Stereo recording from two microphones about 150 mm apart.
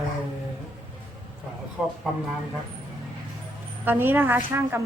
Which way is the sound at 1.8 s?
5° right (ahead or behind).